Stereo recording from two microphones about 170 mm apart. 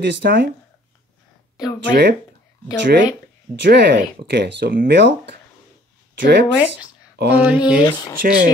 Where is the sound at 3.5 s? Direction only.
75° right (ahead or behind).